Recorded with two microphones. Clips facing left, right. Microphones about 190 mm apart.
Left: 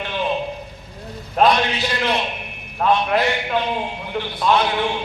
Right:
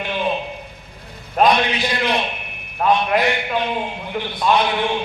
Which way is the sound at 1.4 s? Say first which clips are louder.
Even; 15° right (ahead or behind).